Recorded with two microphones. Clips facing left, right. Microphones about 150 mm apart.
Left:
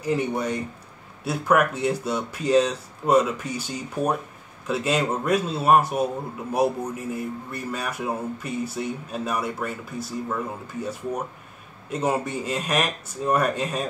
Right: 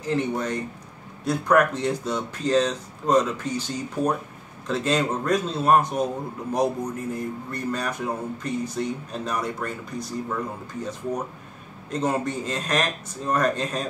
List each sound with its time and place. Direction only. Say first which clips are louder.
0.0 s speech: left 1 dB; 10° left (ahead or behind)